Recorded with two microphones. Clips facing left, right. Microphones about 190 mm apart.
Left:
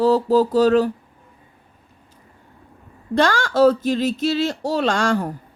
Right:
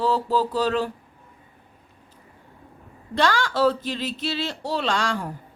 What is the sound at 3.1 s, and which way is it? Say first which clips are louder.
Speech: left 4 dB; 45° left (ahead or behind).